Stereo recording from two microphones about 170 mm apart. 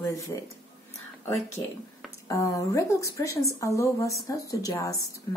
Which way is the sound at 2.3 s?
20° left (ahead or behind).